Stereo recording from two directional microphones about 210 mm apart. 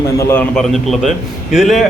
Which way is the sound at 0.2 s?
10° left (ahead or behind).